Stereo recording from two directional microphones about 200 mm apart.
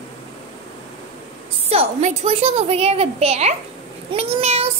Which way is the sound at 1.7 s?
35° right (ahead or behind).